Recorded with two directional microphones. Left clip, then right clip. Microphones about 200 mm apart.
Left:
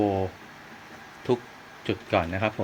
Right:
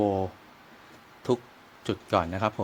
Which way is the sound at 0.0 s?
30° right (ahead or behind).